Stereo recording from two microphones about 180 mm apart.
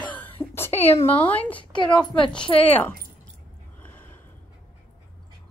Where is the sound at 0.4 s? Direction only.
15° left (ahead or behind).